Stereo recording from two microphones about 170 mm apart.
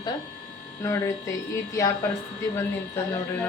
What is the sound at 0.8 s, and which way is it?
Speech, 15° left (ahead or behind).